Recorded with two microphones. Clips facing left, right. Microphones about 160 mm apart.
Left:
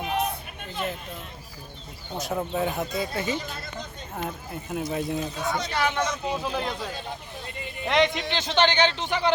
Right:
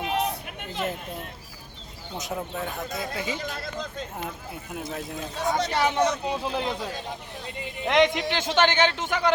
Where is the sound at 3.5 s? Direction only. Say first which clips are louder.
Right 4 dB; 90° right.